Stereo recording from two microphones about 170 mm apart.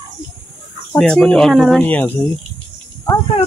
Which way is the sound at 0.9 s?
5° left (ahead or behind).